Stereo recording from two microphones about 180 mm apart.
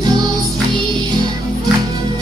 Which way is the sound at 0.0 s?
20° right (ahead or behind).